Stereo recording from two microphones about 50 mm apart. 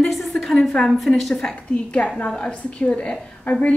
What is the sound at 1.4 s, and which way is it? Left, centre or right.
A woman's voice, left.